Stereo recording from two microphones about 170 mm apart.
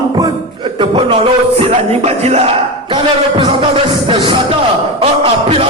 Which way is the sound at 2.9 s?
30° right (ahead or behind).